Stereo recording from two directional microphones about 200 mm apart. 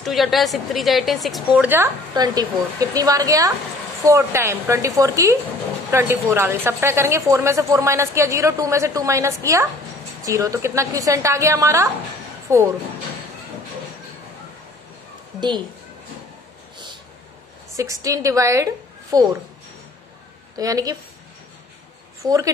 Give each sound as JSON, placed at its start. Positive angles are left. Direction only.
{"t": 0.0, "sound": "a woman's voice", "side_deg": 0}
{"t": 17.7, "sound": "a woman's voice", "side_deg": -15}
{"t": 20.5, "sound": "a woman's voice", "side_deg": -20}
{"t": 22.2, "sound": "speech", "side_deg": -15}